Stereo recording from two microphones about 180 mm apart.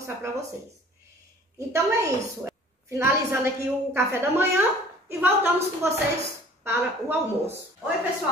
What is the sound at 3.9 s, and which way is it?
A woman's voice, 15° right (ahead or behind).